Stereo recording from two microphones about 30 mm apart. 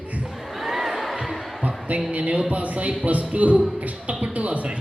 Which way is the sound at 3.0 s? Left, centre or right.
Right.